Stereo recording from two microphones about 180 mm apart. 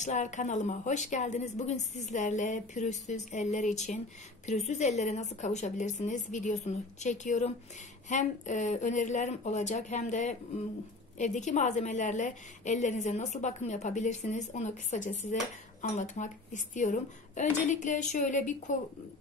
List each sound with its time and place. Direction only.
0.0 s a woman's voice: 40° left (ahead or behind)